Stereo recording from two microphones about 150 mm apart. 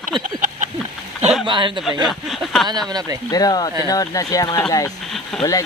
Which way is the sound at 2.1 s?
Centre (ahead or behind).